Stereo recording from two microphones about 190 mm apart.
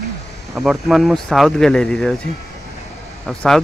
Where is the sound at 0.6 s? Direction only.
Centre (ahead or behind).